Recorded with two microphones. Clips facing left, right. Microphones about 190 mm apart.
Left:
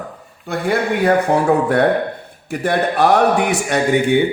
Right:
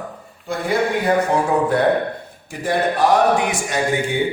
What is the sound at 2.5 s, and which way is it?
Speech, 65° left (ahead or behind).